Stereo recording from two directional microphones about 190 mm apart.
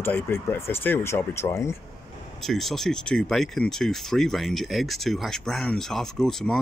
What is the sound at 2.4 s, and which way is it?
Speech, centre (ahead or behind).